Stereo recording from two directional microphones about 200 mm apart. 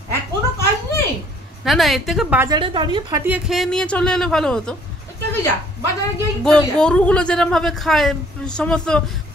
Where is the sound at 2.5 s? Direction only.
25° right (ahead or behind).